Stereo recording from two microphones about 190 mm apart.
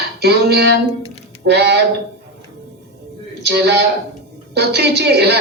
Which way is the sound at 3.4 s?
60° right (ahead or behind).